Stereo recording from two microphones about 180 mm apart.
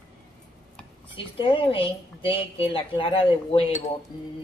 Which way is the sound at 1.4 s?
30° left (ahead or behind).